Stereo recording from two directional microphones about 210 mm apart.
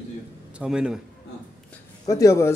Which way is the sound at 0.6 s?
5° right (ahead or behind).